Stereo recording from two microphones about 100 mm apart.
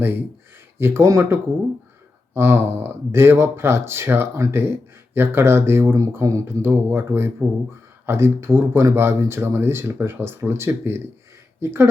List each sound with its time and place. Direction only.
0.8 s speech: 25° right (ahead or behind)